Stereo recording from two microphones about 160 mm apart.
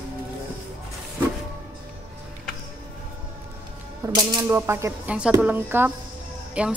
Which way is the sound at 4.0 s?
25° right (ahead or behind).